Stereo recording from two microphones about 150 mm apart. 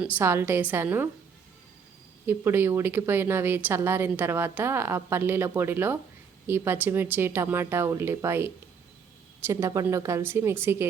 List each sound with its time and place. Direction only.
0.2 s a woman's voice: 15° right (ahead or behind)
2.2 s a woman's voice: 15° right (ahead or behind)